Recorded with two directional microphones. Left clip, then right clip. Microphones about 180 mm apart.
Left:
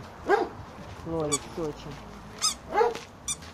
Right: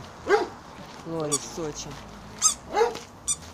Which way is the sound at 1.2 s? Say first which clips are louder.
Right 1 dB; 10° right (ahead or behind).